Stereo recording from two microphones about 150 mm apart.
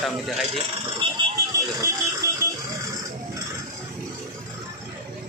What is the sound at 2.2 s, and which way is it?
Music, 20° right (ahead or behind).